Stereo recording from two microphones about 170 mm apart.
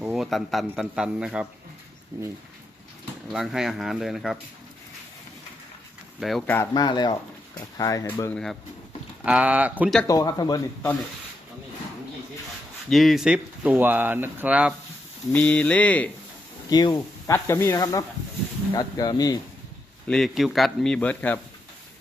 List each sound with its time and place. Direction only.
0.0 s speech: centre (ahead or behind)
2.1 s speech: 15° right (ahead or behind)
3.3 s speech: 5° right (ahead or behind)
6.1 s speech: centre (ahead or behind)
6.5 s speech: 15° left (ahead or behind)
6.8 s speech: 25° left (ahead or behind)
8.3 s speech: 5° left (ahead or behind)
9.2 s speech: 5° right (ahead or behind)
10.1 s speech: 20° left (ahead or behind)
12.9 s speech: centre (ahead or behind)
15.3 s speech: 10° left (ahead or behind)
16.6 s speech: 25° left (ahead or behind)
20.1 s speech: centre (ahead or behind)